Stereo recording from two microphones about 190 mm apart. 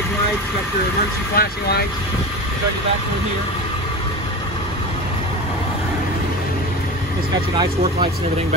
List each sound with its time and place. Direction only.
1.3 s speech: 55° left (ahead or behind)